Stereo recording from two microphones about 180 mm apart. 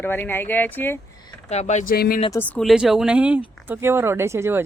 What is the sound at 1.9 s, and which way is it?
Speech, 55° left (ahead or behind).